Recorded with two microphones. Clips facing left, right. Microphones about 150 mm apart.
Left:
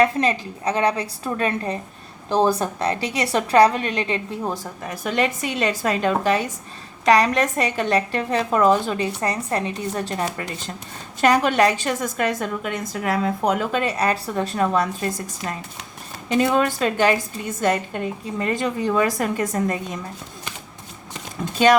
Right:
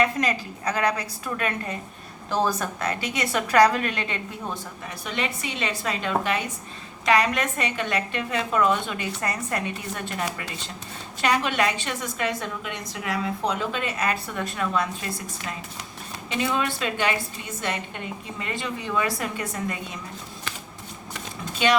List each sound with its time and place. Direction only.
0.0 s a woman's voice: 30° left (ahead or behind); by 13.8 s 50° left (ahead or behind)
13.8 s a woman's voice: 35° left (ahead or behind)